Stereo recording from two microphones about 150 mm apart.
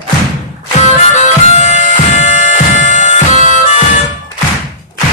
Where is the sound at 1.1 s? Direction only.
50° left (ahead or behind).